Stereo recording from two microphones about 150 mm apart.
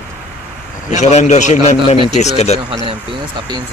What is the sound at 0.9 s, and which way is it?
Speech, 50° left (ahead or behind).